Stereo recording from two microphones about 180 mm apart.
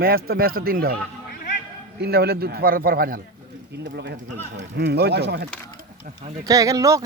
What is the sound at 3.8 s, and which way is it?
Speech, 70° right (ahead or behind).